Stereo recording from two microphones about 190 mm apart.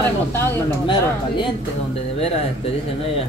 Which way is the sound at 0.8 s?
25° left (ahead or behind).